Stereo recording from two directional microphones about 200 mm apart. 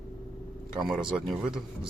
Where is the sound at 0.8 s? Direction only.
Centre (ahead or behind).